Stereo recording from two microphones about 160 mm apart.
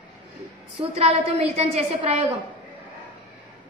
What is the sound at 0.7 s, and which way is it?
Speech, 40° right (ahead or behind).